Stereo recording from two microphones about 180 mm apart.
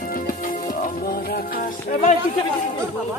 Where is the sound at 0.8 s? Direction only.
50° left (ahead or behind).